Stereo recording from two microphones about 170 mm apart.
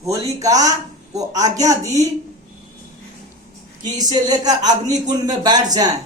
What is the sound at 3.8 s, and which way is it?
Speech, 25° right (ahead or behind).